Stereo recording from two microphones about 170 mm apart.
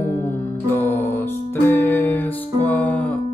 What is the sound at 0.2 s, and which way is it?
Music, 15° left (ahead or behind).